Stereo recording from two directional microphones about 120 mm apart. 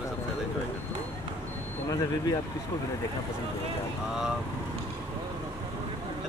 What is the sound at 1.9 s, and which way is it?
Speech, 30° left (ahead or behind).